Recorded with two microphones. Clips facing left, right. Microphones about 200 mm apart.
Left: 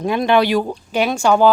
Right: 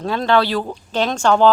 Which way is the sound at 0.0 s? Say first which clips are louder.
Left 2 dB; 15° left (ahead or behind).